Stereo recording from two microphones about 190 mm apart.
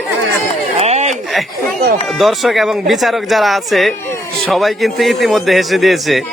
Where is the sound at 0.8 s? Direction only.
35° right (ahead or behind).